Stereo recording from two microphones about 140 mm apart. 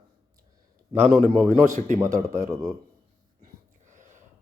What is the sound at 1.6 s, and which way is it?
Speech, 65° right (ahead or behind).